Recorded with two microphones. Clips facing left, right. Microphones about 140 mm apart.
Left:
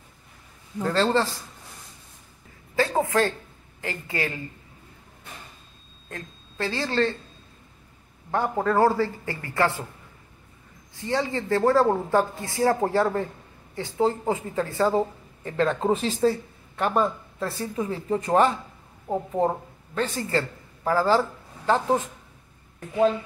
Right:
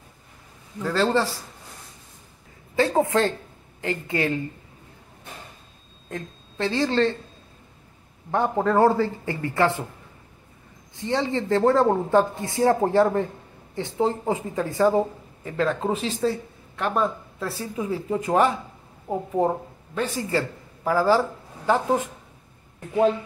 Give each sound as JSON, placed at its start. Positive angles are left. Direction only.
{"t": 0.8, "sound": "speech", "side_deg": -5}
{"t": 2.7, "sound": "a woman's voice", "side_deg": -25}
{"t": 6.0, "sound": "speech", "side_deg": -20}
{"t": 8.3, "sound": "a woman's voice", "side_deg": -15}
{"t": 11.0, "sound": "a woman's voice", "side_deg": -20}